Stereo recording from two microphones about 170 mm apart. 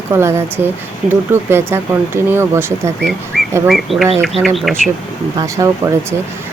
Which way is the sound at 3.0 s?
Centre (ahead or behind).